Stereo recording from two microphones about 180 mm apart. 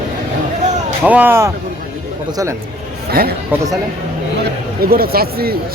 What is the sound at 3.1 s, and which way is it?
Speech, 55° right (ahead or behind).